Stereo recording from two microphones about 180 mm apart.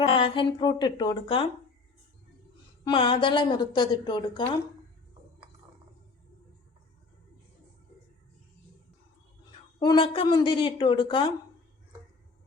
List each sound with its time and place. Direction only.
0.0 s a woman's voice: 30° left (ahead or behind)
2.8 s a woman's voice: 30° left (ahead or behind)
9.8 s a woman's voice: 25° left (ahead or behind)